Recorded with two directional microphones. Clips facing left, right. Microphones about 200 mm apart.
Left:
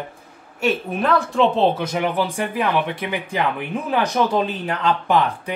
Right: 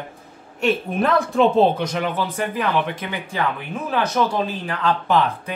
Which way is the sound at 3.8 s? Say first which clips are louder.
Left 1 dB; 15° left (ahead or behind).